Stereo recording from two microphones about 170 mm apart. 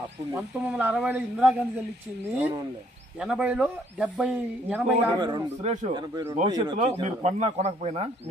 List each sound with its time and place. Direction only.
0.7 s a man's voice: 10° right (ahead or behind)
3.2 s speech: 5° right (ahead or behind)
5.2 s speech: 25° right (ahead or behind)
5.6 s speech: 40° right (ahead or behind)
5.9 s speech: 25° right (ahead or behind)
7.1 s speech: 40° right (ahead or behind)